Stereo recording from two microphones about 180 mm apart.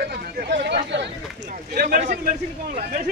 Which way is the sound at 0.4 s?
70° right (ahead or behind).